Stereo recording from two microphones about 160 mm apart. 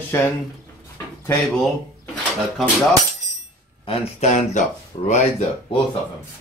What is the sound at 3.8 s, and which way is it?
Speech, 40° left (ahead or behind).